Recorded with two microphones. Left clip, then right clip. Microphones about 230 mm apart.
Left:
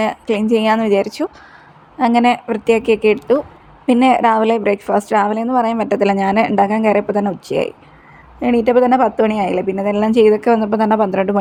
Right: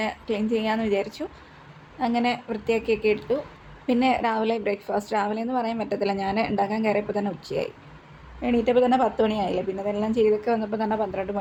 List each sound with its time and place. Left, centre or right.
0.0 s a woman's voice: left